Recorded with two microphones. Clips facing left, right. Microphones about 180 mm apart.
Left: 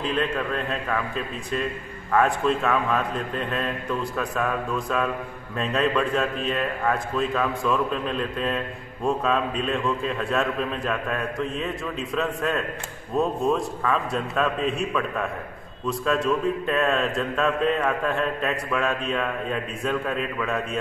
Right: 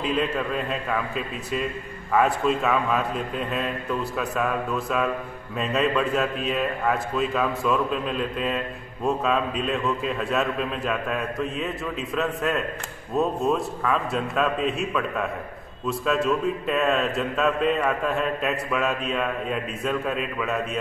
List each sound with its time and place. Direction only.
0.0 s a man's voice: 5° right (ahead or behind)